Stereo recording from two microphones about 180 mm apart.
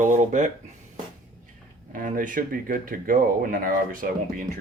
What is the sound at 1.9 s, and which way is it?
Speech, 50° right (ahead or behind).